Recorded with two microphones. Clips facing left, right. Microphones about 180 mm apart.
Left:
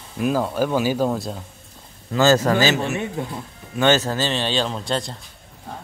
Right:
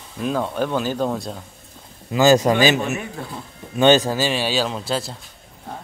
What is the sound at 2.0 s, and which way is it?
Speech, 15° right (ahead or behind).